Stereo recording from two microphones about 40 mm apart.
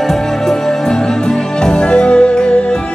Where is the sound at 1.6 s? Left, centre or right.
Left.